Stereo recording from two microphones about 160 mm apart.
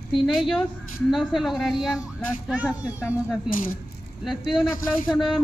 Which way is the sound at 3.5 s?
60° left (ahead or behind).